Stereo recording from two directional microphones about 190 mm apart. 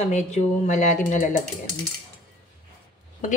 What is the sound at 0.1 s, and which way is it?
Speech, 40° left (ahead or behind).